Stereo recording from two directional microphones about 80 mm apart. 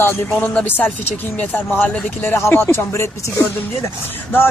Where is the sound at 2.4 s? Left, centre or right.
Left.